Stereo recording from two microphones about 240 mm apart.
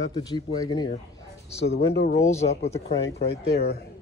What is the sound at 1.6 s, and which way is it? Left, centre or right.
Speech, left.